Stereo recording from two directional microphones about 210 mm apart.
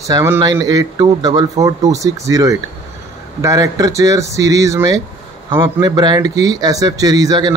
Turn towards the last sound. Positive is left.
turn(degrees=-20)  # may be behind; listen again after turning